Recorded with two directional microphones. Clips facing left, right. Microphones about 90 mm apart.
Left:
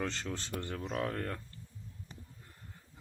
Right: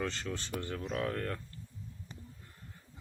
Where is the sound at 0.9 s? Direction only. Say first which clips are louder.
Right 1 dB; 15° left (ahead or behind).